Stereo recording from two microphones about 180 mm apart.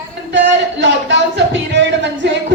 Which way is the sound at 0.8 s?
85° right.